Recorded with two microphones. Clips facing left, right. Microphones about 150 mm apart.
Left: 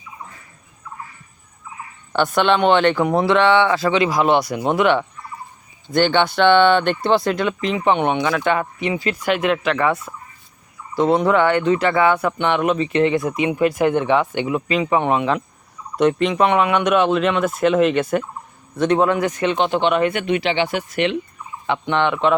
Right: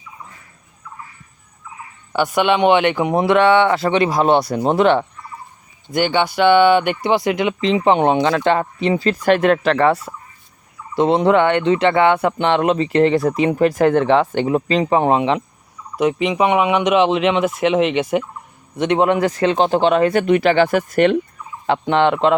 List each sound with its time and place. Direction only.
2.1 s speech: 10° right (ahead or behind); by 5.0 s 30° right (ahead or behind)
5.9 s speech: 10° right (ahead or behind); by 15.4 s 25° right (ahead or behind)
16.0 s speech: 10° right (ahead or behind); by 21.2 s 45° right (ahead or behind)
21.7 s speech: 35° right (ahead or behind)